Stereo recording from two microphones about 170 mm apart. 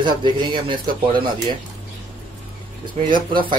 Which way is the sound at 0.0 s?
30° right (ahead or behind).